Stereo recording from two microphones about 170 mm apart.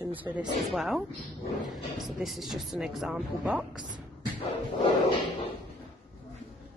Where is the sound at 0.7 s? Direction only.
Centre (ahead or behind).